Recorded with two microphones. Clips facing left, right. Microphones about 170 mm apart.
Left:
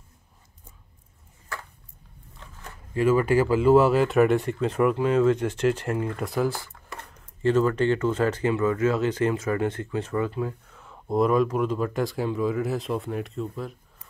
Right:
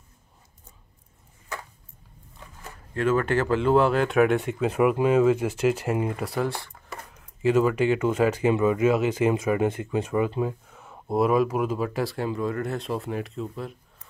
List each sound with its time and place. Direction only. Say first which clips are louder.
1.5 s a sound: right 1 dB; 20° right (ahead or behind)
2.9 s speech: left 2 dB; 5° left (ahead or behind); by 6.2 s 10° right (ahead or behind)
6.2 s speech: left 2 dB; centre (ahead or behind)